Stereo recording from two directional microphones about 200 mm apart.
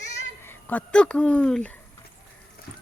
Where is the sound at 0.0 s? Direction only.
35° left (ahead or behind).